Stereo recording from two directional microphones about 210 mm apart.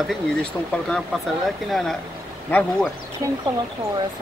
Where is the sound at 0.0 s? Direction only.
5° left (ahead or behind).